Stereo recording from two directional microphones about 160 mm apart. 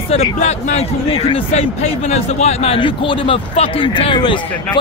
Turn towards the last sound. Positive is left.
turn(degrees=30)  # may be behind; listen again after turning